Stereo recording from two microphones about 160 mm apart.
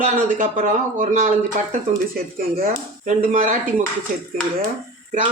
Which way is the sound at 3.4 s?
55° right (ahead or behind).